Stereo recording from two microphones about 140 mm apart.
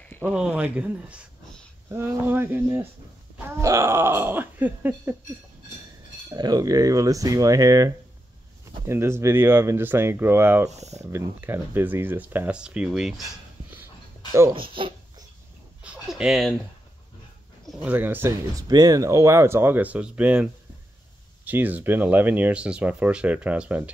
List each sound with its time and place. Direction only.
0.1 s a sound: 10° left (ahead or behind)
0.4 s speech: 10° right (ahead or behind)
6.3 s speech: 30° right (ahead or behind)
10.7 s speech: 55° right (ahead or behind)
11.1 s speech: 15° right (ahead or behind)
14.5 s a sound: 40° right (ahead or behind)
15.8 s a sound: 5° right (ahead or behind)
17.8 s speech: 15° right (ahead or behind)
21.5 s speech: 10° right (ahead or behind)